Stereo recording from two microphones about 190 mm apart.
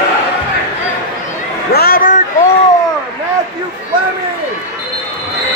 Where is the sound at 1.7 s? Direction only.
50° left (ahead or behind).